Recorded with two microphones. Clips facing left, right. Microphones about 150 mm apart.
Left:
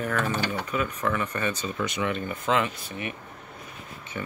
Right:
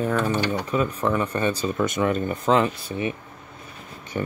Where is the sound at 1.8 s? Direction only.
45° right (ahead or behind); by 3.1 s 30° right (ahead or behind).